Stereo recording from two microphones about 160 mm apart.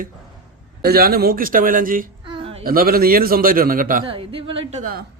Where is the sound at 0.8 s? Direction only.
75° right (ahead or behind).